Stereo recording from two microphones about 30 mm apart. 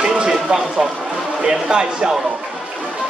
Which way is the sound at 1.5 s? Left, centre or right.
Right.